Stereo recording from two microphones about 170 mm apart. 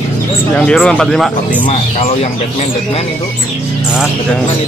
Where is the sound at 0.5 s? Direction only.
5° left (ahead or behind).